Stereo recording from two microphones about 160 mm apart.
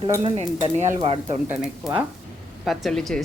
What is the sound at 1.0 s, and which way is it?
Speech, 35° right (ahead or behind).